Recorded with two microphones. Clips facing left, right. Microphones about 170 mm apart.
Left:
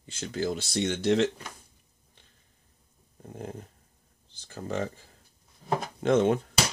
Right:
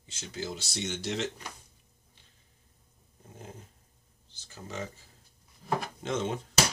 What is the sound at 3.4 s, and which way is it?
Speech, 55° left (ahead or behind).